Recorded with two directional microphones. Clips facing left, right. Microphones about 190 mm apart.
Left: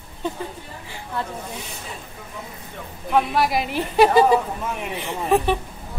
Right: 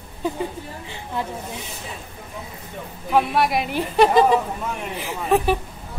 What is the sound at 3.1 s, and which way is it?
A woman's voice, centre (ahead or behind).